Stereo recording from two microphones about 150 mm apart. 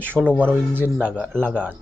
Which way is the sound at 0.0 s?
15° right (ahead or behind).